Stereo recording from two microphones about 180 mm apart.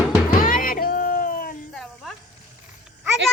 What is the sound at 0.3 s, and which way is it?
Music, 50° left (ahead or behind).